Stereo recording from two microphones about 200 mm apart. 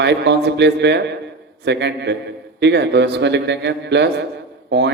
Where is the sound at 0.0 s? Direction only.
60° right (ahead or behind).